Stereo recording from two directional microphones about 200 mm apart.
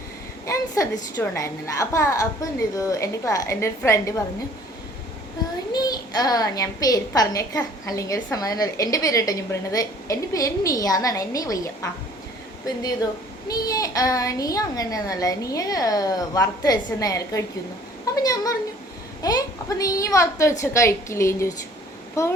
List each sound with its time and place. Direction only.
0.4 s a woman's voice: 15° left (ahead or behind)
5.7 s a woman's voice: 20° left (ahead or behind)
13.5 s a woman's voice: 15° left (ahead or behind)